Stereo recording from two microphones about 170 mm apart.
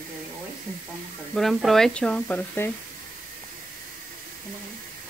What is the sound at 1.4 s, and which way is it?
Speech, centre (ahead or behind).